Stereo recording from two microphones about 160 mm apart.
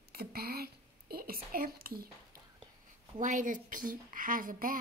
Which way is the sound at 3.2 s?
55° right (ahead or behind).